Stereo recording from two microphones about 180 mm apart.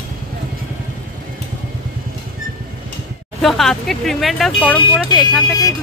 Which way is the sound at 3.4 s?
Centre (ahead or behind).